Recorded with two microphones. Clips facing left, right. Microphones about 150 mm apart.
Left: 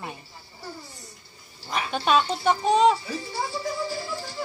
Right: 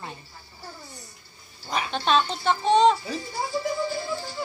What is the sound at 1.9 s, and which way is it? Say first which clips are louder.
Speech: left 1 dB; 10° left (ahead or behind).